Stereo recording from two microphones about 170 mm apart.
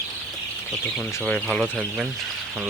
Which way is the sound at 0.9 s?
10° left (ahead or behind).